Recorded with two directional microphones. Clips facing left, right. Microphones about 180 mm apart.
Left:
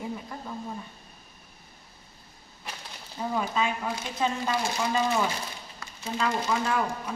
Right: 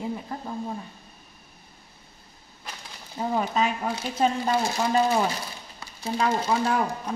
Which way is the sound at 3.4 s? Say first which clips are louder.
Right 2 dB; 40° right (ahead or behind).